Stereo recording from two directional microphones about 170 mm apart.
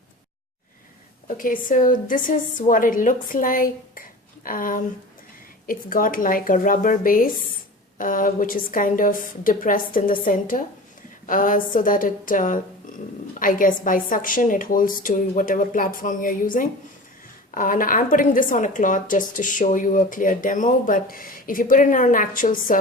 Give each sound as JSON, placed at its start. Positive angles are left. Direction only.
{"t": 1.4, "sound": "a woman's voice", "side_deg": 50}